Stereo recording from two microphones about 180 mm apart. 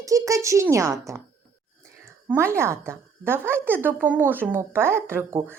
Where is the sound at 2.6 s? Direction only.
15° right (ahead or behind).